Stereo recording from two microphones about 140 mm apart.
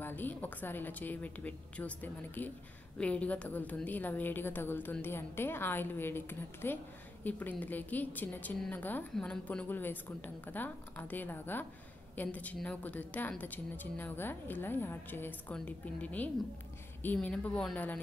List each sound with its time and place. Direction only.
0.0 s a woman's voice: 15° left (ahead or behind)